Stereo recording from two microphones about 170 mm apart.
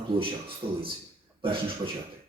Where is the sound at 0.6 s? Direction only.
35° right (ahead or behind).